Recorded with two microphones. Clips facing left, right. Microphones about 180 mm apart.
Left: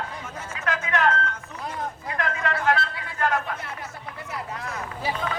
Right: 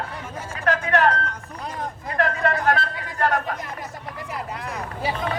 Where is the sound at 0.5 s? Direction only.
35° right (ahead or behind).